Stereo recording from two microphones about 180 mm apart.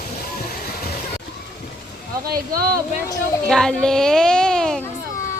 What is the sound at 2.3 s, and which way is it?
Speech, 55° right (ahead or behind).